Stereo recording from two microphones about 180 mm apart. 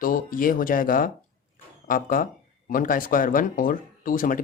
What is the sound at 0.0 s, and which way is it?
Speech, 50° left (ahead or behind).